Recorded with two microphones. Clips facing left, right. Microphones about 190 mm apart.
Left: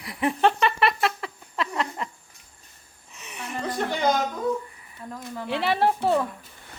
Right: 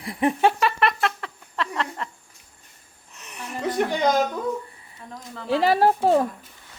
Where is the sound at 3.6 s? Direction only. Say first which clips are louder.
Right 5 dB; 20° right (ahead or behind).